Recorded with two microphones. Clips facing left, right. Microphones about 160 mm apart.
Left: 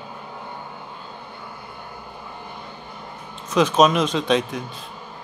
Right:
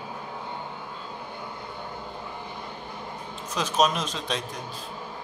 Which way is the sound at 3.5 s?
90° left.